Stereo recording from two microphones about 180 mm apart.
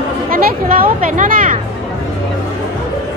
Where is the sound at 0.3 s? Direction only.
55° right (ahead or behind).